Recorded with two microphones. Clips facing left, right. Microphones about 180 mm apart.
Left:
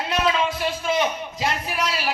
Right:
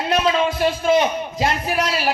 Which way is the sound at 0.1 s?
35° right (ahead or behind).